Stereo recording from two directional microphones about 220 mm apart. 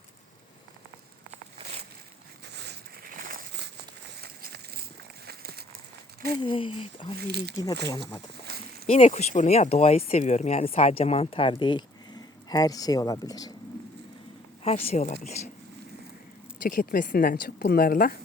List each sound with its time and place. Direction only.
2.4 s a sound: 50° right (ahead or behind)
6.4 s speech: 25° left (ahead or behind)
7.2 s speech: 45° right (ahead or behind)
8.9 s speech: 30° left (ahead or behind)
14.6 s speech: 25° left (ahead or behind)
16.6 s speech: 40° left (ahead or behind)